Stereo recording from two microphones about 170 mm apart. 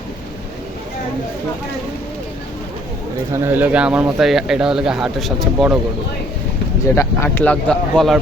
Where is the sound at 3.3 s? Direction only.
15° right (ahead or behind).